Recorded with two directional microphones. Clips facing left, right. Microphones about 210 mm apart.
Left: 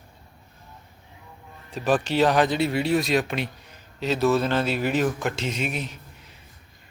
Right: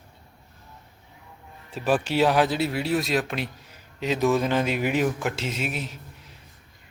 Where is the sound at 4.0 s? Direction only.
15° right (ahead or behind).